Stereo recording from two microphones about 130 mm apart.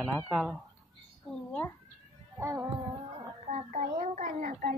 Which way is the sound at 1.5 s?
15° left (ahead or behind).